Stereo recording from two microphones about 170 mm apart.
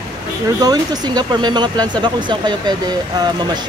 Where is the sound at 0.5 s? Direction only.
25° right (ahead or behind).